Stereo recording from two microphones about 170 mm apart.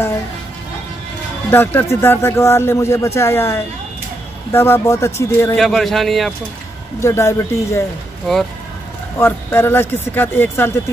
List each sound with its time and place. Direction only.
1.5 s speech: 10° left (ahead or behind)
5.6 s a man's voice: centre (ahead or behind)
7.0 s speech: 15° left (ahead or behind)
9.2 s speech: 15° left (ahead or behind)